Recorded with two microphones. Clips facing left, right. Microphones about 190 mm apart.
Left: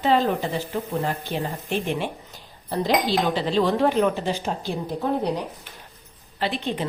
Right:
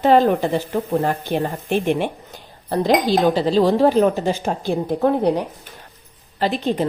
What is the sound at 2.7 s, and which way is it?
A woman's voice, 45° right (ahead or behind).